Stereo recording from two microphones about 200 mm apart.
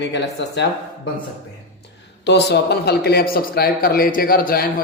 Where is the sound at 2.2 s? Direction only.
55° left (ahead or behind).